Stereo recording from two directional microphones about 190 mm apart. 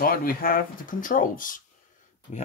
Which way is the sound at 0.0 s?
50° left (ahead or behind).